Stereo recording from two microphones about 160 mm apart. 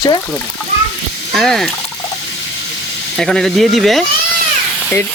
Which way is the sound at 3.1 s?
5° left (ahead or behind).